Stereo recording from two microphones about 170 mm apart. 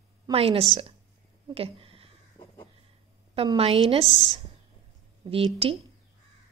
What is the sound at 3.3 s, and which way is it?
A woman's voice, 35° right (ahead or behind).